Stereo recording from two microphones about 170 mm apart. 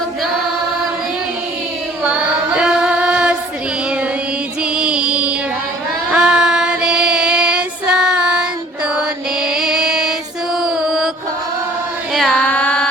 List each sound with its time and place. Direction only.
2.0 s female singing: 5° right (ahead or behind)
4.6 s child singing: 5° right (ahead or behind)
12.1 s music: centre (ahead or behind)